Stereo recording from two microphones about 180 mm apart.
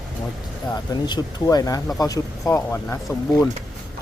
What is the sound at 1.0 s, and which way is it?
Speech, 25° left (ahead or behind).